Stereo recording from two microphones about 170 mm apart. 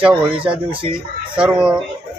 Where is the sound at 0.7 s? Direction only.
30° right (ahead or behind).